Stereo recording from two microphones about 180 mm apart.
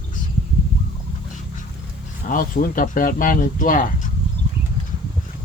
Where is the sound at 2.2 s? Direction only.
50° left (ahead or behind).